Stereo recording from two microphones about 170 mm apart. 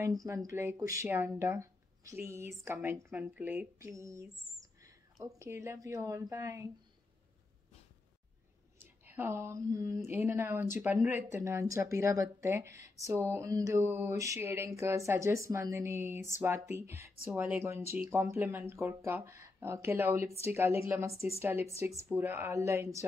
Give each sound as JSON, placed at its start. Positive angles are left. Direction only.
{"t": 0.0, "sound": "speech", "side_deg": -20}
{"t": 8.7, "sound": "speech", "side_deg": -10}